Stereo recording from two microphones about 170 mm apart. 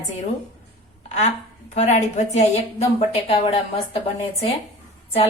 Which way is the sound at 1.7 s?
40° left (ahead or behind).